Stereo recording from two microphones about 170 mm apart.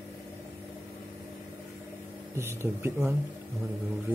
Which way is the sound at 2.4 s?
15° right (ahead or behind).